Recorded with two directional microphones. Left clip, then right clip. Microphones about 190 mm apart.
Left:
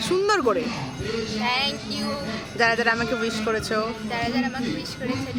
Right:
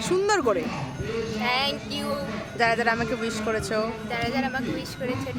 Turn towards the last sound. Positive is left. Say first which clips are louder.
# left 1 dB
turn(degrees=-5)  # may be behind; listen again after turning